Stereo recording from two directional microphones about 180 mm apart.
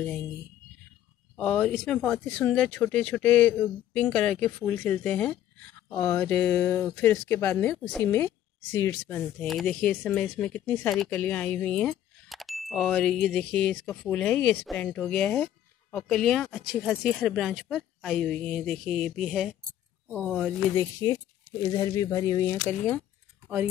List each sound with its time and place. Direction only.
1.3 s speech: 5° left (ahead or behind)
20.7 s speech: 15° left (ahead or behind)